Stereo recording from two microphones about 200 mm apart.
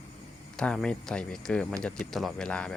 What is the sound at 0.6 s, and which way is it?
Speech, 5° left (ahead or behind).